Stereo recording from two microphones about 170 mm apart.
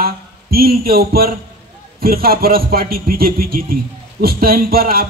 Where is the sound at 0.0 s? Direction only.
60° right (ahead or behind).